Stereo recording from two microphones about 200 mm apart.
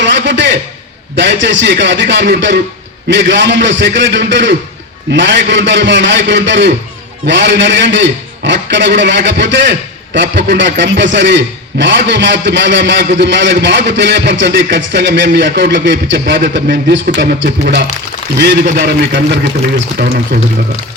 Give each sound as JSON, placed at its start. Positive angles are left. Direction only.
{"t": 0.0, "sound": "a sound", "side_deg": -60}
{"t": 1.1, "sound": "a man's voice", "side_deg": -65}
{"t": 16.2, "sound": "a man's voice", "side_deg": -50}